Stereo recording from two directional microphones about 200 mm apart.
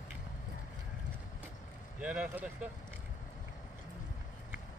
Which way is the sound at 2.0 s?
5° right (ahead or behind).